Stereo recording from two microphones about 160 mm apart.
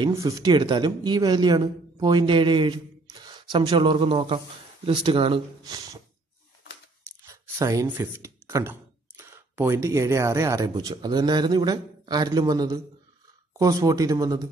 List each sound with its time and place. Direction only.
0.1 s speech: 20° right (ahead or behind)
7.2 s speech: 20° right (ahead or behind)